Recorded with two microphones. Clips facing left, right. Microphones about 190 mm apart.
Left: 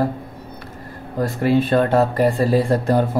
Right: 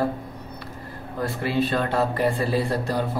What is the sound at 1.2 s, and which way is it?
Speech, 50° left (ahead or behind).